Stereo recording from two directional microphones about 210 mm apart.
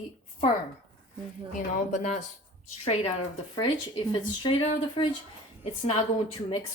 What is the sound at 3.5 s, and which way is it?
Speech, 20° left (ahead or behind).